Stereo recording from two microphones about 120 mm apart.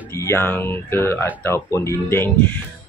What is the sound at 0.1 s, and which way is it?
Speech, 20° left (ahead or behind).